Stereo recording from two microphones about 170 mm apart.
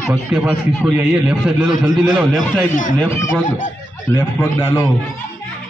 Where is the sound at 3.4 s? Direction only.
50° left (ahead or behind).